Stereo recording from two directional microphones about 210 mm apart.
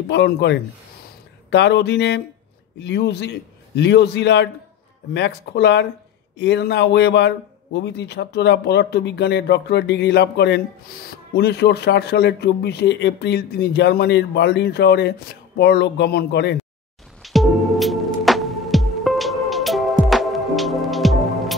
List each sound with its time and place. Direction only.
0.1 s a man's voice: 55° left (ahead or behind)
17.2 s music: centre (ahead or behind)